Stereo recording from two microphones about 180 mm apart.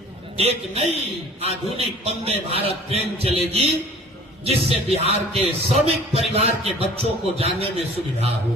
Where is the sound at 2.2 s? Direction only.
35° right (ahead or behind).